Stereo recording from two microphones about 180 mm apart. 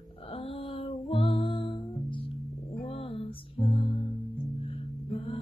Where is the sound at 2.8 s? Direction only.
30° left (ahead or behind).